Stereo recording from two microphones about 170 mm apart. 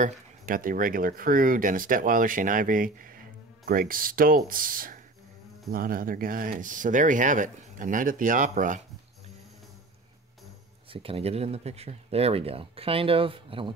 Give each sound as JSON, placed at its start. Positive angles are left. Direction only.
{"t": 0.0, "sound": "speech", "side_deg": -55}
{"t": 10.9, "sound": "speech", "side_deg": -35}